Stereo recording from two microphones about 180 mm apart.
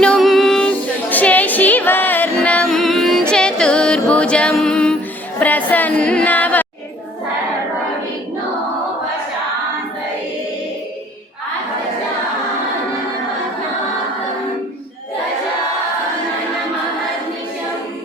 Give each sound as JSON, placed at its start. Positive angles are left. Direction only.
{"t": 0.0, "sound": "music", "side_deg": 0}
{"t": 5.4, "sound": "speech", "side_deg": 10}